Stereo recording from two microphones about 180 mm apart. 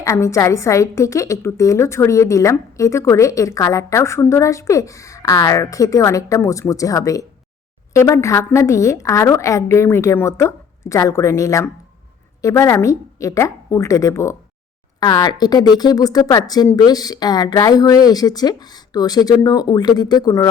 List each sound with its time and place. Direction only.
0.0 s a woman's voice: 15° left (ahead or behind)